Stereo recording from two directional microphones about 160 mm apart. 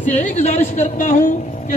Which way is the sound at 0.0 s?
50° left (ahead or behind).